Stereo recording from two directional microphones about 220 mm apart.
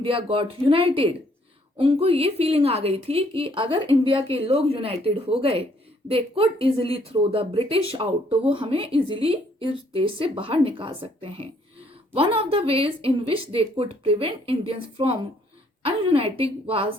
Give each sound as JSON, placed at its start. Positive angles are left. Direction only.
{"t": 0.0, "sound": "speech", "side_deg": -25}